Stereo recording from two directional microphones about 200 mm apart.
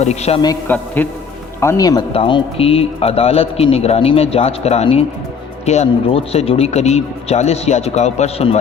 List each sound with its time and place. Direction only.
0.0 s speech: 35° left (ahead or behind)
0.7 s a man's voice: 10° left (ahead or behind); by 8.5 s 30° left (ahead or behind)